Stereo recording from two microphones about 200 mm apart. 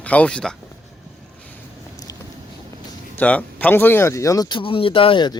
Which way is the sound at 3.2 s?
5° left (ahead or behind).